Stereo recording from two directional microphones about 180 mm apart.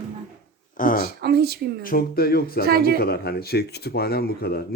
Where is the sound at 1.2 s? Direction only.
60° right (ahead or behind).